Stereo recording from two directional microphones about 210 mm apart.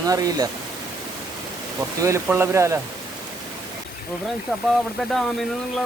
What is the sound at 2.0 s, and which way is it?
Speech, 15° right (ahead or behind).